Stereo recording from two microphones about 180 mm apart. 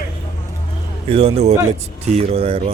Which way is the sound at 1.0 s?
35° right (ahead or behind).